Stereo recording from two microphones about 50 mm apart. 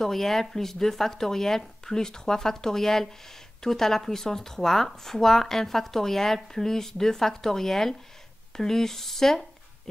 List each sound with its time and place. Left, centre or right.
0.0 s speech: centre